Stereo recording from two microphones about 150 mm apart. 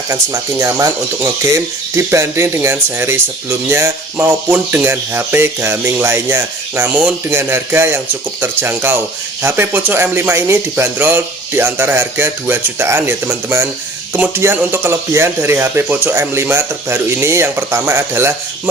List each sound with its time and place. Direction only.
0.6 s speech: 20° right (ahead or behind)